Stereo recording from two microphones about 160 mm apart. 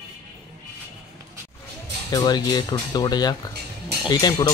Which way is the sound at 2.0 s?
25° left (ahead or behind).